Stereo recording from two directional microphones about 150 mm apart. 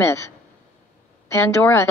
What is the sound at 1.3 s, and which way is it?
Speech, 15° left (ahead or behind).